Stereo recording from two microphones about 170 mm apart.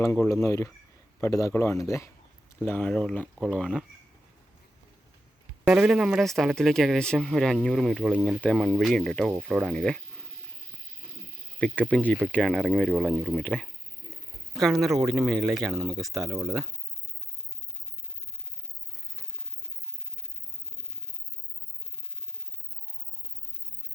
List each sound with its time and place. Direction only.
0.4 s speech: 20° left (ahead or behind)
5.6 s speech: 5° right (ahead or behind)
11.6 s speech: 5° left (ahead or behind)